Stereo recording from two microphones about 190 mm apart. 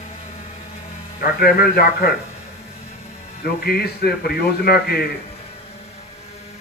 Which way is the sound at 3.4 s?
55° left (ahead or behind).